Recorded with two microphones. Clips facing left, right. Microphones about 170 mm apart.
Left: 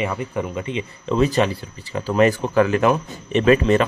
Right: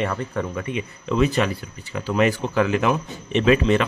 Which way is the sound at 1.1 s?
35° left (ahead or behind).